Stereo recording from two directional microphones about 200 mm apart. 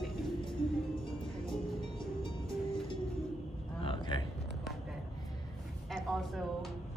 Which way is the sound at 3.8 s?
25° left (ahead or behind).